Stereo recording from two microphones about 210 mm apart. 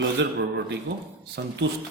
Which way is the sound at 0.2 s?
55° right (ahead or behind).